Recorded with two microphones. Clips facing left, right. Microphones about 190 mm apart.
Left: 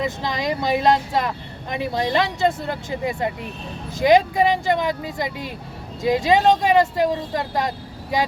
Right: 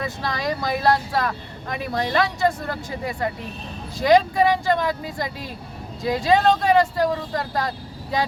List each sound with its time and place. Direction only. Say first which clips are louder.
0.0 s speech: left 2 dB; 20° left (ahead or behind)